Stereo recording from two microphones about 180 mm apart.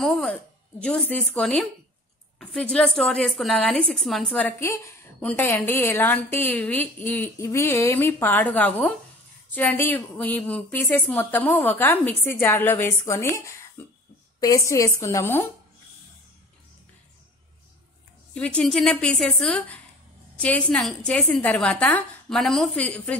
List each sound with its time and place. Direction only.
0.0 s a woman's voice: 5° left (ahead or behind)
14.4 s a woman's voice: 20° left (ahead or behind)
18.3 s a woman's voice: 5° left (ahead or behind)